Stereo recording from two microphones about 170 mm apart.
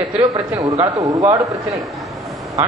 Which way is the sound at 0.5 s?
20° right (ahead or behind).